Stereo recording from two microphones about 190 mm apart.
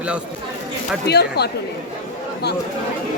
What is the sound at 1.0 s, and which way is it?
Speech, 60° left (ahead or behind).